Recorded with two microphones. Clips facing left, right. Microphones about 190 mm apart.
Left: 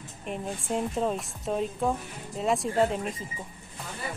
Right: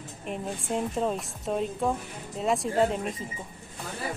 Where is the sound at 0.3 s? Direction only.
Centre (ahead or behind).